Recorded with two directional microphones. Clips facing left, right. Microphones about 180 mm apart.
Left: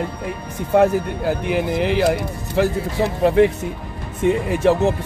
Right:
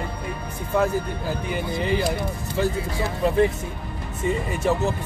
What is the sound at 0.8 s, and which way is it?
Speech, 75° left (ahead or behind).